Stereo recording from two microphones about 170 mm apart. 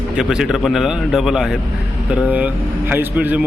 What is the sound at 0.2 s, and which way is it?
A man's voice, 5° right (ahead or behind).